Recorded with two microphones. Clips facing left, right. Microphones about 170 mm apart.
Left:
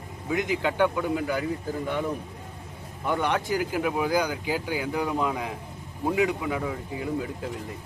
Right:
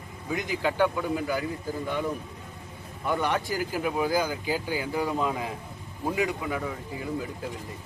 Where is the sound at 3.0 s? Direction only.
20° left (ahead or behind).